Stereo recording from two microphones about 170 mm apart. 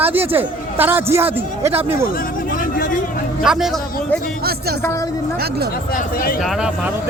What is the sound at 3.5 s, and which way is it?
Speech, 5° right (ahead or behind).